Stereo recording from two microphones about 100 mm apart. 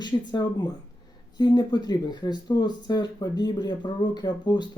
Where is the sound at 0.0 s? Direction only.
45° left (ahead or behind).